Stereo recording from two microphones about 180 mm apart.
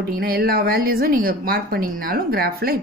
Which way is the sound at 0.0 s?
60° right (ahead or behind).